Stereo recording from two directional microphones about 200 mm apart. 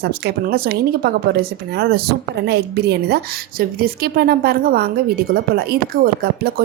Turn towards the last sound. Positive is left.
turn(degrees=-50)  # may be behind; listen again after turning